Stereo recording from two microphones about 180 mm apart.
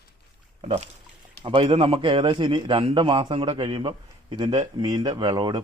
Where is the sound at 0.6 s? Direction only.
35° right (ahead or behind).